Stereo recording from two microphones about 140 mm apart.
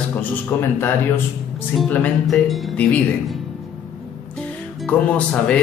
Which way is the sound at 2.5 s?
Centre (ahead or behind).